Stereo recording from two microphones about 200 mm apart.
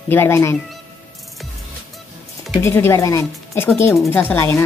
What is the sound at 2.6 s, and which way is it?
Speech, 15° left (ahead or behind).